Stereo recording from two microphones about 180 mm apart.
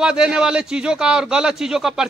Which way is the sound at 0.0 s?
5° right (ahead or behind).